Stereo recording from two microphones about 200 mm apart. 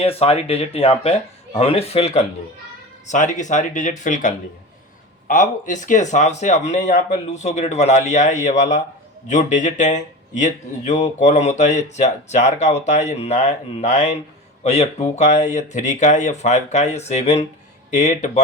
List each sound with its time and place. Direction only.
0.0 s speech: 30° left (ahead or behind)